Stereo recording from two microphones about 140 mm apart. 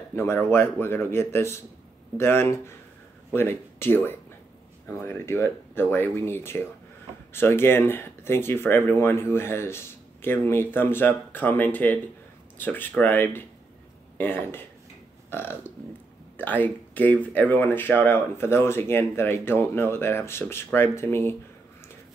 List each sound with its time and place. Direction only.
0.1 s speech: 15° left (ahead or behind)